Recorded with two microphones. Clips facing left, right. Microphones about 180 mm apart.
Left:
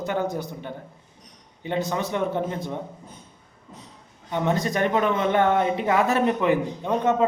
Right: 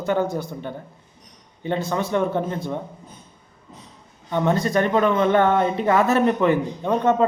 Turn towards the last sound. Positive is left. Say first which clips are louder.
# right 3 dB
turn(degrees=15)  # may be behind; listen again after turning